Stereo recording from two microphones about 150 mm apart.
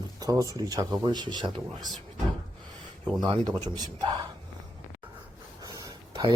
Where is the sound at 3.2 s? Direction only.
30° right (ahead or behind).